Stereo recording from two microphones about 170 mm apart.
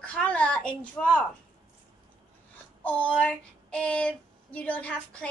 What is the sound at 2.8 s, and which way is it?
Female singing, 5° left (ahead or behind).